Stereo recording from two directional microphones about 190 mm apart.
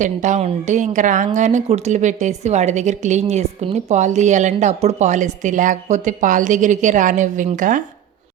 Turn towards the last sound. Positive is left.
turn(degrees=-45)  # may be behind; listen again after turning